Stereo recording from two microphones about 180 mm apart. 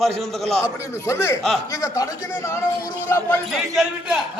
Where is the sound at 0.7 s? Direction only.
15° left (ahead or behind).